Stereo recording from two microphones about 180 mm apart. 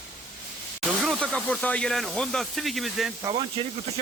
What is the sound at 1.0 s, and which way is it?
A man's voice, 5° left (ahead or behind).